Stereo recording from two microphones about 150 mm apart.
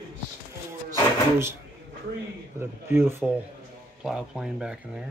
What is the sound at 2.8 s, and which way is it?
Speech, 15° right (ahead or behind).